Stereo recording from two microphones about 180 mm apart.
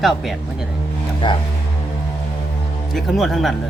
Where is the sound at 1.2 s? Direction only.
25° left (ahead or behind).